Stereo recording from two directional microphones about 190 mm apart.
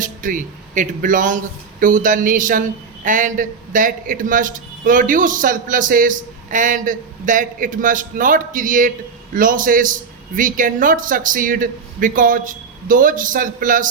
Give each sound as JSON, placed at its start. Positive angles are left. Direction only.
{"t": 0.0, "sound": "a man's voice", "side_deg": -45}